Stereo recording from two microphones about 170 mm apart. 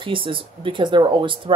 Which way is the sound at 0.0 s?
30° right (ahead or behind).